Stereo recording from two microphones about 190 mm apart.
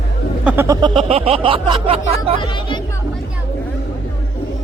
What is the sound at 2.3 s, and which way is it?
Speech, 25° left (ahead or behind).